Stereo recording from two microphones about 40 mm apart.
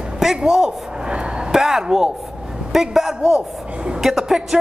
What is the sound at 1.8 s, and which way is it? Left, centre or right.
Speech, centre.